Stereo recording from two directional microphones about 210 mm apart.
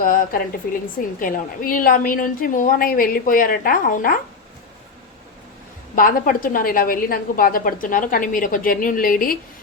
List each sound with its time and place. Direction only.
0.0 s a woman's voice: 40° left (ahead or behind)
6.0 s a woman's voice: 40° left (ahead or behind)